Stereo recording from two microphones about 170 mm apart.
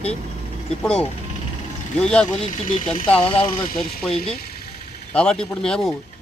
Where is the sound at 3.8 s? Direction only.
5° left (ahead or behind).